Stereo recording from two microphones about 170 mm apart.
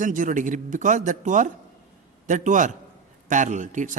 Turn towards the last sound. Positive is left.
turn(degrees=-45)  # may be behind; listen again after turning